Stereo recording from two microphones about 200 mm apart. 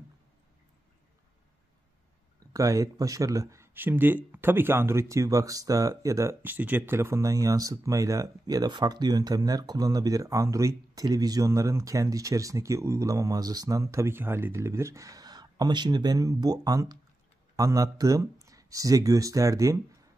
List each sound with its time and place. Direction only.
2.5 s speech: 15° right (ahead or behind)